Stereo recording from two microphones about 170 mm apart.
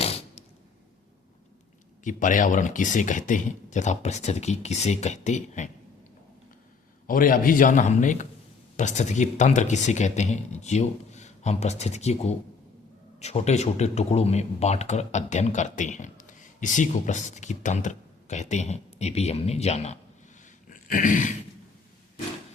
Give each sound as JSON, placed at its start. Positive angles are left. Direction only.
{"t": 0.0, "sound": "a sound", "side_deg": 35}
{"t": 2.0, "sound": "speech", "side_deg": 50}
{"t": 7.1, "sound": "speech", "side_deg": 55}
{"t": 20.7, "sound": "dog", "side_deg": 50}